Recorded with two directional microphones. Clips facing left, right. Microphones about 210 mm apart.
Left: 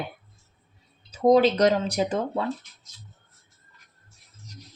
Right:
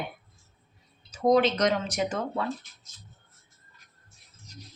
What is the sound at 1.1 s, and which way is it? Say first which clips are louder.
A woman's voice: left 4 dB; 30° left (ahead or behind).